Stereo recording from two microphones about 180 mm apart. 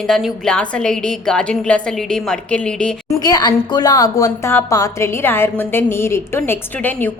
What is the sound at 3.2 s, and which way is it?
A woman's voice, 20° left (ahead or behind).